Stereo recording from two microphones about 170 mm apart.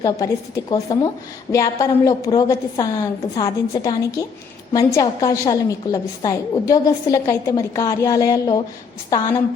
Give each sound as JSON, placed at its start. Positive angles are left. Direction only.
{"t": 0.0, "sound": "a woman's voice", "side_deg": 20}